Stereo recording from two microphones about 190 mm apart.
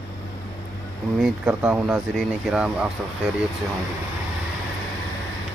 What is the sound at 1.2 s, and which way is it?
Speech, 5° right (ahead or behind).